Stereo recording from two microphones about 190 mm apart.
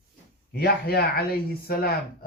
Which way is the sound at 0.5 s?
55° left (ahead or behind).